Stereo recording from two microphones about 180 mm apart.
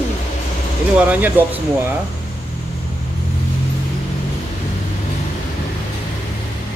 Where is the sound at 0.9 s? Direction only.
10° right (ahead or behind).